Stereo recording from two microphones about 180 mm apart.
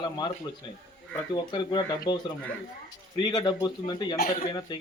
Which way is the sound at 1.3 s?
25° left (ahead or behind).